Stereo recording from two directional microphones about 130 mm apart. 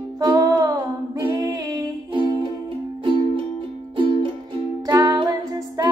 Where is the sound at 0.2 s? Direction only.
30° right (ahead or behind).